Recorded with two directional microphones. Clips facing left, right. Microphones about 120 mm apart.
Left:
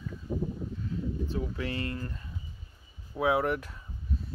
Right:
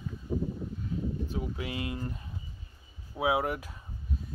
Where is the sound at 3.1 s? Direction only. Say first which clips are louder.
Left 2 dB; 15° right (ahead or behind).